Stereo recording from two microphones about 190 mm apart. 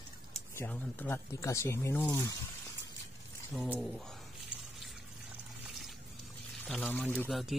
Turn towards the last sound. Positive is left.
turn(degrees=0)  # may be behind; listen again after turning